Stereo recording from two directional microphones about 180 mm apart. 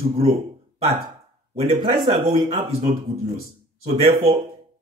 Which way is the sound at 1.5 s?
35° right (ahead or behind).